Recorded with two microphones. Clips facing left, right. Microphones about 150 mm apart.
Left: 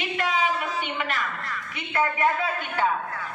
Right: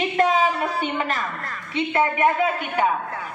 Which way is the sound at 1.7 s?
25° right (ahead or behind).